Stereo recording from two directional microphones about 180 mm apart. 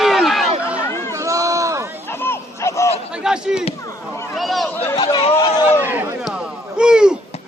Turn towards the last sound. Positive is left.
turn(degrees=-5)  # may be behind; listen again after turning